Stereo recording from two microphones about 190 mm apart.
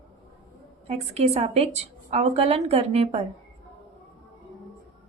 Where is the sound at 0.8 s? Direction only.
35° right (ahead or behind).